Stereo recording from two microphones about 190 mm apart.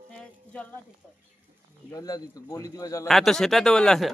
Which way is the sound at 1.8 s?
20° left (ahead or behind).